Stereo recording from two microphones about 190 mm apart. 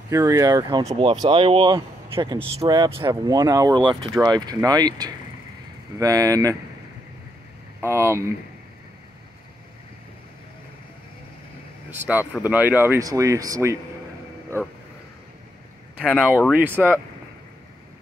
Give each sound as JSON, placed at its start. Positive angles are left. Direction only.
{"t": 0.1, "sound": "speech", "side_deg": -20}
{"t": 2.1, "sound": "speech", "side_deg": -15}
{"t": 7.8, "sound": "speech", "side_deg": -15}
{"t": 12.4, "sound": "speech", "side_deg": -10}
{"t": 16.0, "sound": "speech", "side_deg": -5}